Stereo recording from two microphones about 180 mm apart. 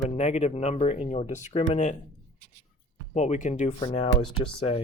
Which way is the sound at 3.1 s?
40° left (ahead or behind).